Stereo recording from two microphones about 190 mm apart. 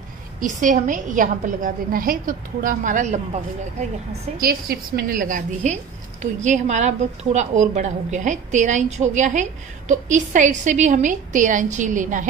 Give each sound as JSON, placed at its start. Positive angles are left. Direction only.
{"t": 0.4, "sound": "a woman's voice", "side_deg": -40}
{"t": 4.1, "sound": "a woman's voice", "side_deg": -55}